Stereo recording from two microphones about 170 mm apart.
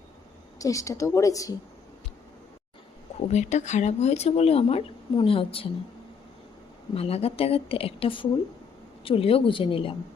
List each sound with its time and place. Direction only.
0.6 s a woman's voice: 20° left (ahead or behind)
3.2 s speech: 40° left (ahead or behind)
6.9 s speech: 35° left (ahead or behind)